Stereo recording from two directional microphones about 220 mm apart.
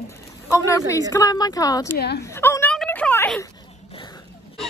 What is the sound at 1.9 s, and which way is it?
Speech, 50° left (ahead or behind).